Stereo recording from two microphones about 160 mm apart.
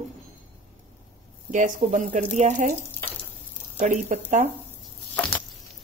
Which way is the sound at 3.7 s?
50° right (ahead or behind).